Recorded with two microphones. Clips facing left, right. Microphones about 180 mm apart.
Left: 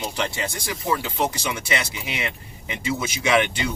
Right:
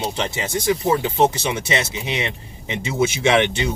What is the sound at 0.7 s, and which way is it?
Speech, 25° right (ahead or behind).